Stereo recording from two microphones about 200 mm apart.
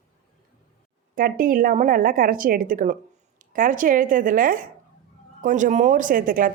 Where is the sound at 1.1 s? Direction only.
45° right (ahead or behind).